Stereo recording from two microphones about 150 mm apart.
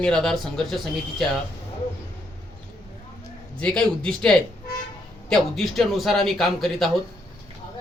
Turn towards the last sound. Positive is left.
turn(degrees=0)  # may be behind; listen again after turning